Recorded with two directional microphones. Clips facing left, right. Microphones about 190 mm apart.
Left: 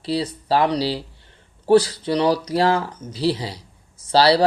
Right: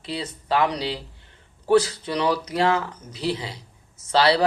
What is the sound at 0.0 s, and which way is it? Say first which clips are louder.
Speech: left 8 dB; 35° left (ahead or behind).